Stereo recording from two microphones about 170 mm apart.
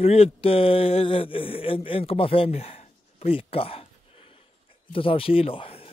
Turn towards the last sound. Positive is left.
turn(degrees=35)  # may be behind; listen again after turning